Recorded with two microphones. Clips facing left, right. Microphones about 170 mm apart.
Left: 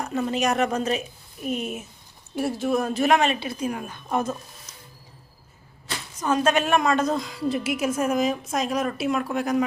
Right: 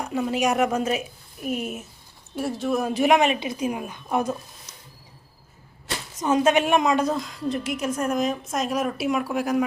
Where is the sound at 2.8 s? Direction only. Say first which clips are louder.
Right 3 dB; 15° right (ahead or behind).